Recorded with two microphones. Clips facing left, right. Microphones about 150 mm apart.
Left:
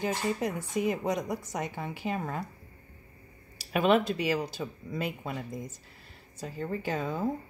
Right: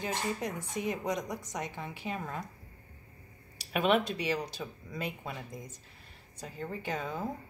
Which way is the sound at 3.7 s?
40° left (ahead or behind).